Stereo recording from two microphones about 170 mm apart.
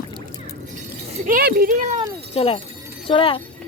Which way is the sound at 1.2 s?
55° right (ahead or behind).